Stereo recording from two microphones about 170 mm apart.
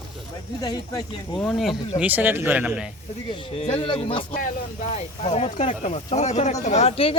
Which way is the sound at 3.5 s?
35° left (ahead or behind).